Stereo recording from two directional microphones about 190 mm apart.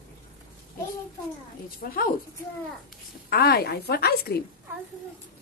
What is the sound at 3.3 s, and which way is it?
A woman's voice, 55° left (ahead or behind).